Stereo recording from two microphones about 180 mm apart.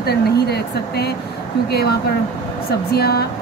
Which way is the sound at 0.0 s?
65° left (ahead or behind).